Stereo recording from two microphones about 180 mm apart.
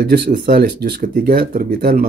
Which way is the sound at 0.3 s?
50° right (ahead or behind).